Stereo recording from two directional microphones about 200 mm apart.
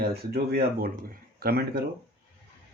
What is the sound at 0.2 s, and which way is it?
Speech, 50° right (ahead or behind).